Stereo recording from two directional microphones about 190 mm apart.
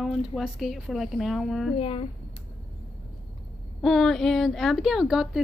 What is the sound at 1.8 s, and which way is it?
Speech, 30° left (ahead or behind).